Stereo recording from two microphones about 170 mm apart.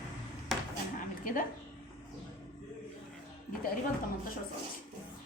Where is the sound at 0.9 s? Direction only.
50° left (ahead or behind).